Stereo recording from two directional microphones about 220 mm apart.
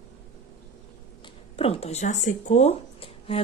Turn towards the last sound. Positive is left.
turn(degrees=25)  # may be behind; listen again after turning